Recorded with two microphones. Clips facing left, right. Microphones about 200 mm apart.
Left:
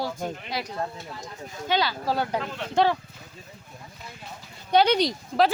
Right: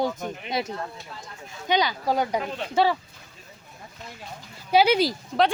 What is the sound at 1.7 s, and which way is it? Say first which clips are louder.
Speech: right 2 dB; 15° right (ahead or behind).